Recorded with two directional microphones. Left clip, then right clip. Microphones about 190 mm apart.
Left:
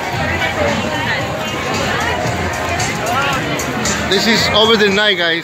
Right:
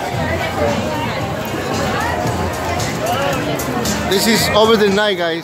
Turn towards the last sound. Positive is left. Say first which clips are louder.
# left 2 dB
turn(degrees=-5)  # may be behind; listen again after turning